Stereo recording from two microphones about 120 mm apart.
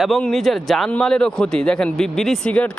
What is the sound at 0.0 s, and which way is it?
Speech, centre (ahead or behind).